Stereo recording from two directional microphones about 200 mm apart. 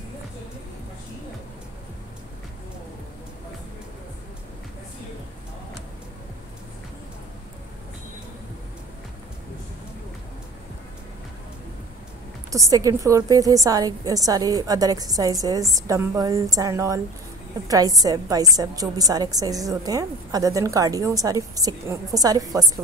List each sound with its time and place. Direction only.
12.4 s a woman's voice: 15° right (ahead or behind)